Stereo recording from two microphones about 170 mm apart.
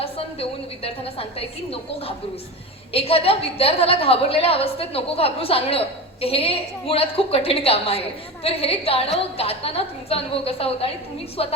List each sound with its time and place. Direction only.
0.0 s a woman's voice: 35° left (ahead or behind)